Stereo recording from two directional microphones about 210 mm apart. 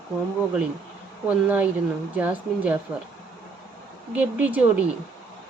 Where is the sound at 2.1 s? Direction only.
5° right (ahead or behind).